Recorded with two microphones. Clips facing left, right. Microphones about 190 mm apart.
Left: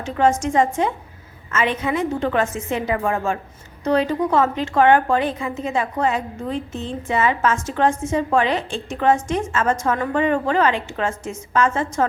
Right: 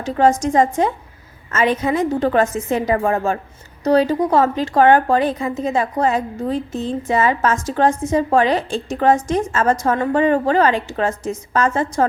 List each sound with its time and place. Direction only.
0.0 s a woman's voice: 35° right (ahead or behind)